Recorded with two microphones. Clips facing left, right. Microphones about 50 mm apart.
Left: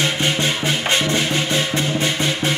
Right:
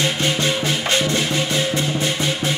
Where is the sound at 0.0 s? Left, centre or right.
Left.